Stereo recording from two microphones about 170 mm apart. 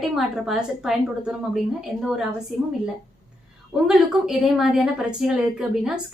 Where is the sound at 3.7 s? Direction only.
5° right (ahead or behind).